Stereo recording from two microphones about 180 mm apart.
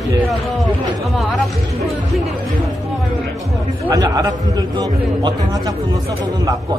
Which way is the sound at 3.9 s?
20° right (ahead or behind).